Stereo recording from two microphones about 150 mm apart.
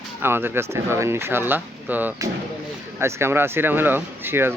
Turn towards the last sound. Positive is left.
turn(degrees=-15)  # may be behind; listen again after turning